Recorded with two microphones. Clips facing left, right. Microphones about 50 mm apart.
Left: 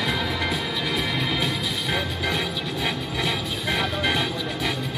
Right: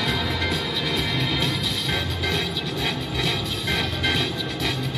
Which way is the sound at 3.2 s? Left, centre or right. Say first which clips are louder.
Left 1 dB; centre.